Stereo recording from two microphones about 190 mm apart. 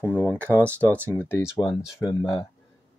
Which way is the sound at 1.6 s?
15° left (ahead or behind).